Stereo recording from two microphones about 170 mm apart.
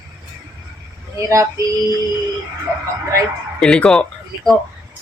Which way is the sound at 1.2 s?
20° right (ahead or behind).